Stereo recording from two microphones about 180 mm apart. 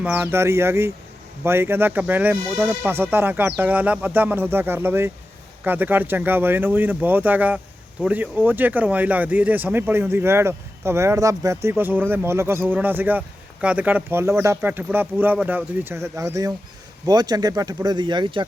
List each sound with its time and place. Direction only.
0.0 s speech: 10° right (ahead or behind); by 18.4 s 25° right (ahead or behind)